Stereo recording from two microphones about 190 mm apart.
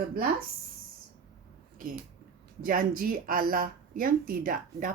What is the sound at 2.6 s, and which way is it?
Speech, 50° right (ahead or behind).